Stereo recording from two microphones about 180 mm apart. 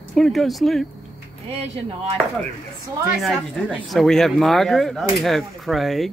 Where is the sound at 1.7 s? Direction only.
35° right (ahead or behind).